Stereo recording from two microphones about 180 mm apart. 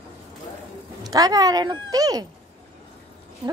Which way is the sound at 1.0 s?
20° right (ahead or behind).